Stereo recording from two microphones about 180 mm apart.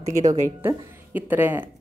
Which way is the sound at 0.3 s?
15° right (ahead or behind).